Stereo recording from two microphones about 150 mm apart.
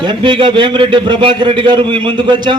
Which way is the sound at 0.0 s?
30° right (ahead or behind).